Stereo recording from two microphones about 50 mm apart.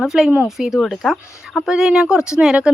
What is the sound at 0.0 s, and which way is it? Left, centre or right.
Speech, centre.